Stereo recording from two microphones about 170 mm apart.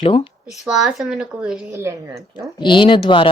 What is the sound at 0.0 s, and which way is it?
Speech, 35° left (ahead or behind).